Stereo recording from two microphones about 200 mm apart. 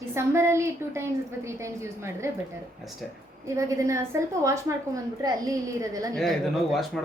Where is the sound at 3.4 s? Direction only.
15° right (ahead or behind).